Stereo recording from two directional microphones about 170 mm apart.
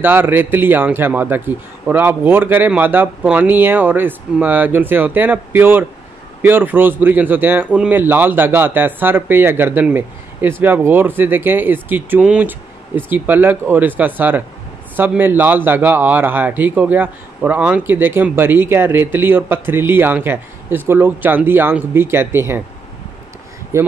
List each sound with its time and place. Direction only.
0.0 s a man's voice: 10° right (ahead or behind)
23.7 s a man's voice: 15° right (ahead or behind)